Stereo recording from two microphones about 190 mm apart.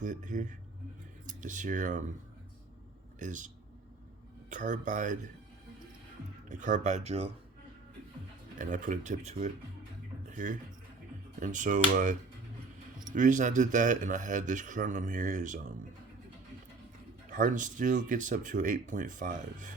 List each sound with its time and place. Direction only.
0.0 s a man's voice: 40° right (ahead or behind)
3.2 s a man's voice: 40° right (ahead or behind)
6.5 s a man's voice: 40° right (ahead or behind)
8.5 s a man's voice: 45° right (ahead or behind)
13.1 s a man's voice: 40° right (ahead or behind)
17.2 s speech: 45° right (ahead or behind)